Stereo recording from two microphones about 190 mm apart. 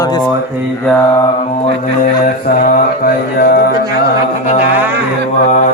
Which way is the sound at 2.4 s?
50° left (ahead or behind).